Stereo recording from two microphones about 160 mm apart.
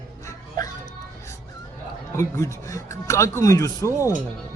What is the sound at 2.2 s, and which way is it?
Speech, 20° left (ahead or behind).